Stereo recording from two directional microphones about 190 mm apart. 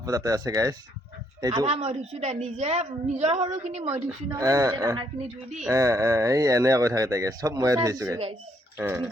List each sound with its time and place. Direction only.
0.0 s speech: 15° right (ahead or behind)
1.6 s a woman's voice: 35° right (ahead or behind)
3.9 s speech: 20° right (ahead or behind)